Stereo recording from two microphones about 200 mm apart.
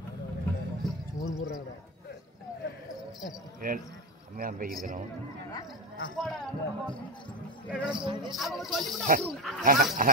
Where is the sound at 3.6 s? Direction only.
45° right (ahead or behind).